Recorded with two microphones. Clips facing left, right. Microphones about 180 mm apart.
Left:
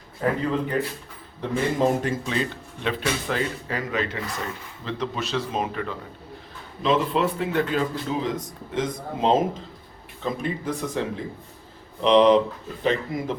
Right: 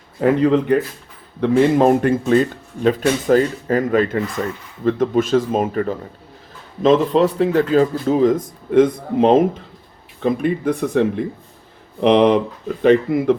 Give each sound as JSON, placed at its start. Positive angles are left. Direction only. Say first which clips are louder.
{"t": 0.2, "sound": "speech", "louder": "right 9 dB", "side_deg": -80}